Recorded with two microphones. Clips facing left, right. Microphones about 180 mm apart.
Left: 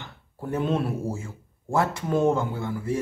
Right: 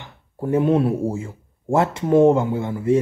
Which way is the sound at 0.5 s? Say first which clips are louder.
Right 8 dB; 15° right (ahead or behind).